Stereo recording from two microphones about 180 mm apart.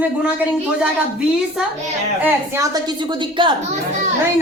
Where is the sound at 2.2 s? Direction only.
15° right (ahead or behind).